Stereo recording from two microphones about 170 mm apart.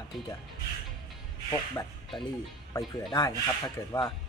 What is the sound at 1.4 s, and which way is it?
Speech, 25° left (ahead or behind).